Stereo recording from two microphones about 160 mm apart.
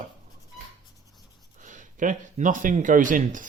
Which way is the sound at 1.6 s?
50° right (ahead or behind).